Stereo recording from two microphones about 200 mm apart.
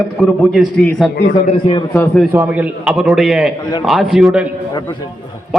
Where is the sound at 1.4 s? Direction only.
30° left (ahead or behind).